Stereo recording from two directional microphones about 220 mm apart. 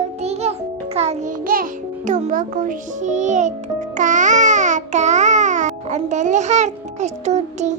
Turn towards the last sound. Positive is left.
turn(degrees=-30)  # may be behind; listen again after turning